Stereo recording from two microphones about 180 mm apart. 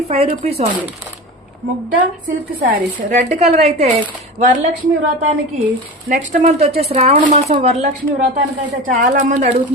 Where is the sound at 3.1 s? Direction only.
40° right (ahead or behind).